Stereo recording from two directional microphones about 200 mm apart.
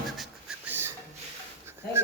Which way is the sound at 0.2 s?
10° right (ahead or behind).